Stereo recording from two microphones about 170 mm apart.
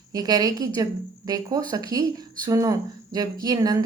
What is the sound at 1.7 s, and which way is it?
A woman's voice, 20° right (ahead or behind).